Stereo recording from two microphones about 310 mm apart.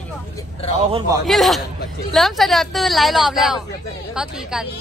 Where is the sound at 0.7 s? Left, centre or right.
Centre.